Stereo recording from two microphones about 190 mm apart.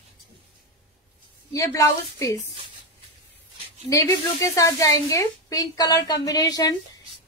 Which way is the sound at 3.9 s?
15° left (ahead or behind).